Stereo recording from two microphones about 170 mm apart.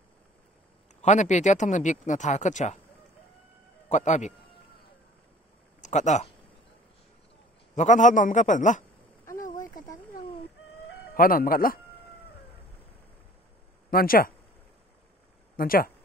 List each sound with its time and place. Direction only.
1.0 s speech: 45° left (ahead or behind)
3.9 s speech: 45° left (ahead or behind)
5.8 s speech: 45° left (ahead or behind)
7.7 s speech: 45° left (ahead or behind)
9.2 s a sound: 15° left (ahead or behind)
9.8 s a sound: 55° left (ahead or behind)
11.1 s speech: 55° left (ahead or behind)
13.8 s speech: 60° left (ahead or behind)
15.5 s speech: 60° left (ahead or behind)